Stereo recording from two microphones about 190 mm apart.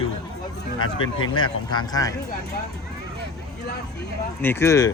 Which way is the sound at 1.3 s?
25° left (ahead or behind).